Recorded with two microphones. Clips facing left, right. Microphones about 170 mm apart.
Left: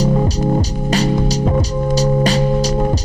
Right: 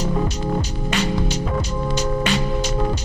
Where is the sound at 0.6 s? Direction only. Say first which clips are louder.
Left 6 dB; 35° left (ahead or behind).